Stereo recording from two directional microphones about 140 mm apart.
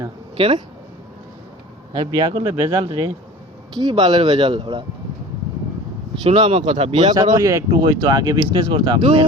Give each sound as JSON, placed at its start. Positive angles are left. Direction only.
{"t": 0.3, "sound": "speech", "side_deg": -40}
{"t": 1.9, "sound": "speech", "side_deg": -30}
{"t": 2.5, "sound": "speech", "side_deg": -20}
{"t": 3.8, "sound": "speech", "side_deg": -35}
{"t": 6.2, "sound": "speech", "side_deg": -45}
{"t": 7.3, "sound": "speech", "side_deg": -25}